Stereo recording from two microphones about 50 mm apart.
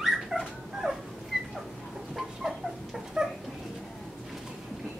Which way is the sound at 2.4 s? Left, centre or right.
Centre.